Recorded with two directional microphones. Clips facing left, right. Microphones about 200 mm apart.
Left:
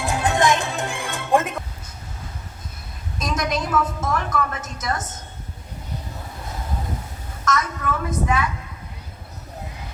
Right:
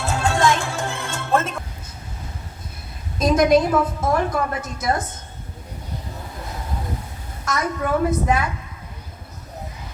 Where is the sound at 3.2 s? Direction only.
30° right (ahead or behind).